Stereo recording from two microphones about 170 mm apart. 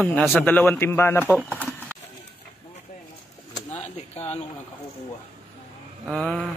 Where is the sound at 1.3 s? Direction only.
5° right (ahead or behind).